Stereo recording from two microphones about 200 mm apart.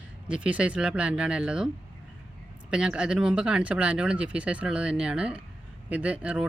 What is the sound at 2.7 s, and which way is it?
Speech, 5° right (ahead or behind).